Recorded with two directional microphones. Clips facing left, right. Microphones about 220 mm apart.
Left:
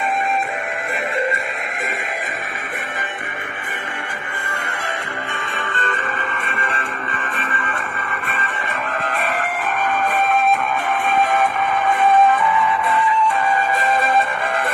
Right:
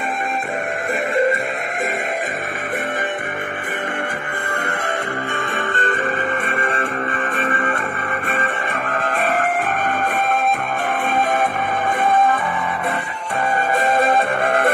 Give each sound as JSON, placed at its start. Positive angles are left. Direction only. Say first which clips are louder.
{"t": 7.4, "sound": "music", "louder": "right 6 dB", "side_deg": -45}
{"t": 9.4, "sound": "music", "louder": "right 3 dB", "side_deg": -50}